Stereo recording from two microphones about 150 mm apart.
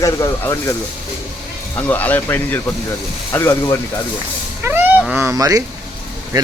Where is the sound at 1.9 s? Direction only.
10° left (ahead or behind).